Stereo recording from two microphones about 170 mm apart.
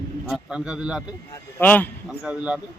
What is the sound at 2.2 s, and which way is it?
Speech, 5° right (ahead or behind).